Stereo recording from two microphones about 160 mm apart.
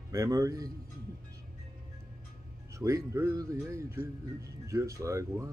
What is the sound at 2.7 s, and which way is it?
A man's voice, 20° right (ahead or behind).